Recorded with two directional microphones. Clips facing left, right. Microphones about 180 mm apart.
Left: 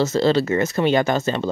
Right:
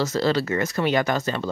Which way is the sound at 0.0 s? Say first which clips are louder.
Left 4 dB; 25° left (ahead or behind).